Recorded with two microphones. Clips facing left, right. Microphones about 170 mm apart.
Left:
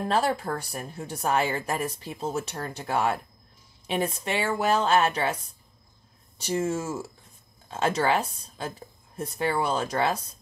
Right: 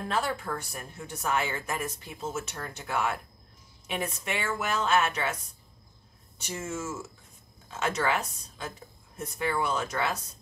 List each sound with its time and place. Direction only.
0.1 s speech: 35° left (ahead or behind)